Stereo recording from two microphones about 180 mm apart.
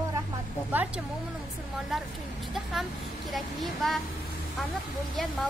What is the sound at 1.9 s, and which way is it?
Speech, centre (ahead or behind).